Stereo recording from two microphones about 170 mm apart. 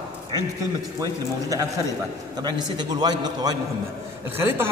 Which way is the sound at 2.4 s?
25° right (ahead or behind).